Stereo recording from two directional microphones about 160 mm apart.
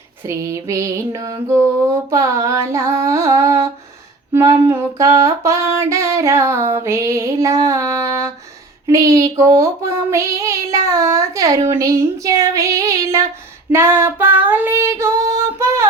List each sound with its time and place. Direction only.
0.3 s mantra: 20° right (ahead or behind)
6.7 s a sound: 15° right (ahead or behind)
8.9 s child singing: 20° right (ahead or behind)
11.7 s mantra: 20° right (ahead or behind)
13.7 s female singing: 15° right (ahead or behind)